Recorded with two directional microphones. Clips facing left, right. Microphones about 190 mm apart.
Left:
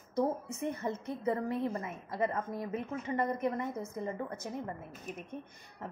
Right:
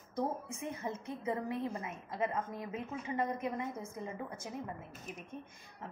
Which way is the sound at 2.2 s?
50° left (ahead or behind).